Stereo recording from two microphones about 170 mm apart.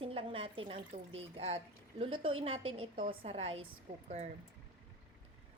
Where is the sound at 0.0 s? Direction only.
30° right (ahead or behind).